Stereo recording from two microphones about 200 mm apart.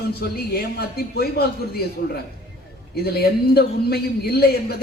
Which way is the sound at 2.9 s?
50° left (ahead or behind).